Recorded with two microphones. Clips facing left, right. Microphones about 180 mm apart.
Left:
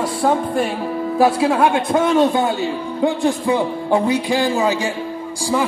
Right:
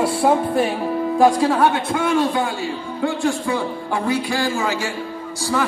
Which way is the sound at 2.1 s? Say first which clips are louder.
Left 4 dB; 20° left (ahead or behind).